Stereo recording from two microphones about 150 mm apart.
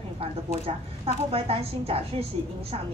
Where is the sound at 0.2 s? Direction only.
40° right (ahead or behind).